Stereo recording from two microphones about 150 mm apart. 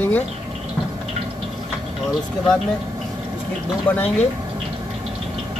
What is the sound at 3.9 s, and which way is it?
Speech, 15° left (ahead or behind).